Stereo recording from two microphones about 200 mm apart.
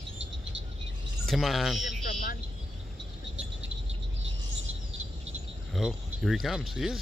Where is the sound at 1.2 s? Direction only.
Centre (ahead or behind).